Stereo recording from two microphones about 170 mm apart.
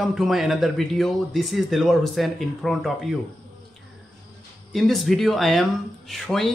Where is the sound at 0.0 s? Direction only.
Centre (ahead or behind).